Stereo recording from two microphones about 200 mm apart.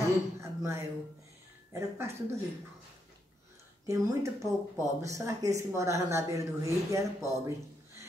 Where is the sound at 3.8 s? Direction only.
15° right (ahead or behind).